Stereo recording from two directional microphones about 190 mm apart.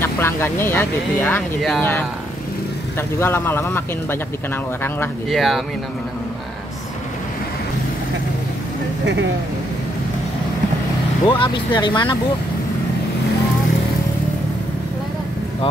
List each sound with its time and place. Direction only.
0.0 s speech: 10° left (ahead or behind)
5.3 s speech: centre (ahead or behind)
11.2 s speech: 25° left (ahead or behind)